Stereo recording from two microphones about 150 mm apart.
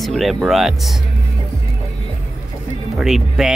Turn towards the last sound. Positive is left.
turn(degrees=-5)  # may be behind; listen again after turning